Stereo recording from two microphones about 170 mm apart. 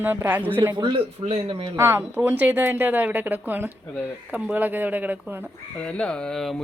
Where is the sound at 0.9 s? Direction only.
30° right (ahead or behind).